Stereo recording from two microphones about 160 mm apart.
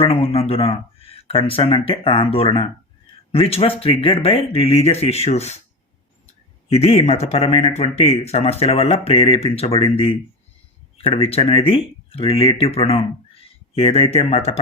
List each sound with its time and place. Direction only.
0.1 s speech: 40° left (ahead or behind)
6.7 s speech: 40° left (ahead or behind)